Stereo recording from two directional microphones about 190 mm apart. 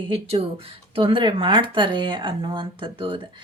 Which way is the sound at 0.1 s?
30° right (ahead or behind).